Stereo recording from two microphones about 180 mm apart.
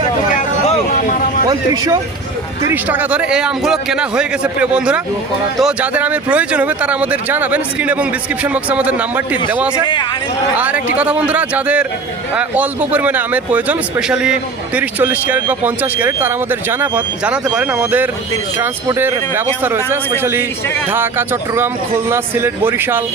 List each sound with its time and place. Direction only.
0.3 s vehicle: 40° left (ahead or behind)
1.5 s a man's voice: 20° right (ahead or behind)